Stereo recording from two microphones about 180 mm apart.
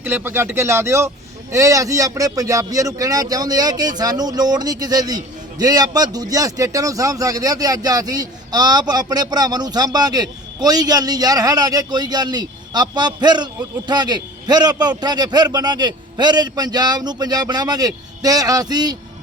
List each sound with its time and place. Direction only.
0.0 s speech: 10° right (ahead or behind)